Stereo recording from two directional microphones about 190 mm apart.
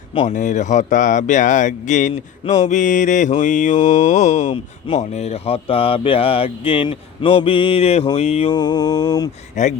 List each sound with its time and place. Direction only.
0.1 s speech: 30° left (ahead or behind)
0.3 s speech: 40° left (ahead or behind)
8.4 s mantra: 20° left (ahead or behind)
9.6 s speech: 40° left (ahead or behind)